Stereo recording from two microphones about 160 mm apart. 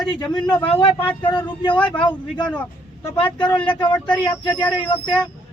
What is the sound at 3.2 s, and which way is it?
Speech, 30° left (ahead or behind).